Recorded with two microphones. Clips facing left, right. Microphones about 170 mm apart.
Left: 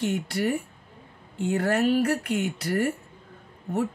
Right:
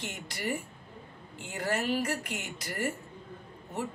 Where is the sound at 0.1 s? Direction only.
60° left (ahead or behind).